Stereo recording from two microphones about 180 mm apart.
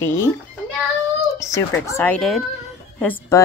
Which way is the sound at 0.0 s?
15° left (ahead or behind).